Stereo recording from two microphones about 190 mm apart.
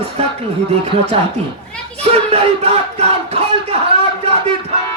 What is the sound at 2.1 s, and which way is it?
Crowd, 30° right (ahead or behind).